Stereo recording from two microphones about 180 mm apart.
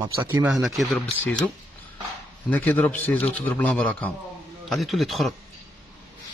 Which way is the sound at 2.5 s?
10° left (ahead or behind).